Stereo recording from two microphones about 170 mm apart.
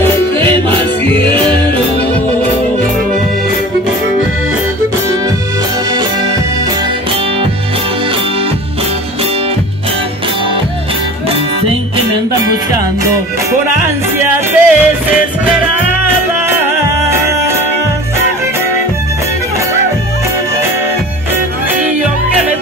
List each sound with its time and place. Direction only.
0.4 s music: 30° right (ahead or behind)
14.2 s music: 10° right (ahead or behind)